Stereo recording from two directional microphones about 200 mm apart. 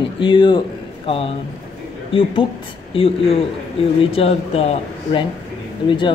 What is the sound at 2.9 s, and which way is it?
Speech, 25° left (ahead or behind).